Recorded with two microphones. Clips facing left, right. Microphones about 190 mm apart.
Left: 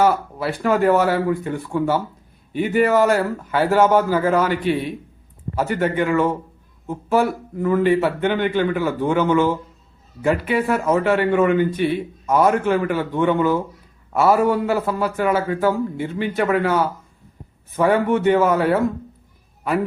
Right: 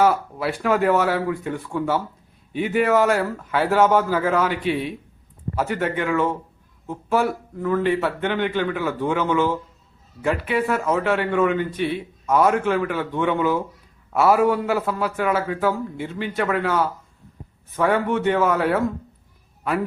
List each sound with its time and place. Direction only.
0.0 s a man's voice: centre (ahead or behind)